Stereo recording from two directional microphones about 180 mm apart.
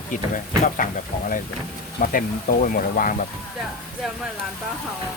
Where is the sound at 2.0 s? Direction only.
50° left (ahead or behind).